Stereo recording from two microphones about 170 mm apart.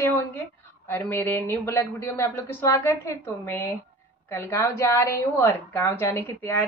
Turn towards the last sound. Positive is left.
turn(degrees=15)  # may be behind; listen again after turning